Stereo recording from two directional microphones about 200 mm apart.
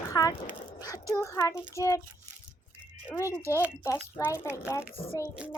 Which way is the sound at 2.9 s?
5° right (ahead or behind).